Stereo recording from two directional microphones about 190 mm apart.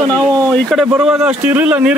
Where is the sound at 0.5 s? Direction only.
Centre (ahead or behind).